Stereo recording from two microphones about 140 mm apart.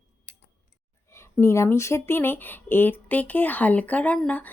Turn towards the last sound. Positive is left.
turn(degrees=10)  # may be behind; listen again after turning